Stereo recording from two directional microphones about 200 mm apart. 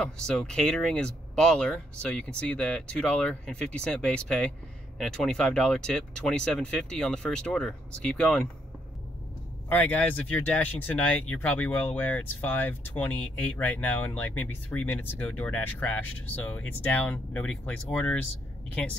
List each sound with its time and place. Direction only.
0.0 s speech: 5° left (ahead or behind)
9.7 s speech: 10° left (ahead or behind)